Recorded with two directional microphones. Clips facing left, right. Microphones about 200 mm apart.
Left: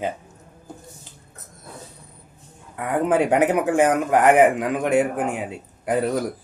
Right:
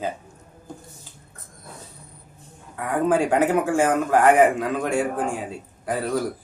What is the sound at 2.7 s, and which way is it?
Speech, 20° left (ahead or behind).